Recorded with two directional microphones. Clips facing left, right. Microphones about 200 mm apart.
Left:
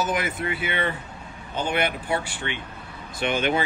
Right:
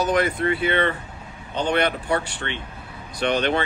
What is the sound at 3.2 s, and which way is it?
Speech, 40° right (ahead or behind).